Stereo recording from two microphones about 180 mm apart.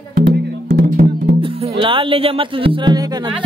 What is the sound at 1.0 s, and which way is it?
Music, 40° right (ahead or behind).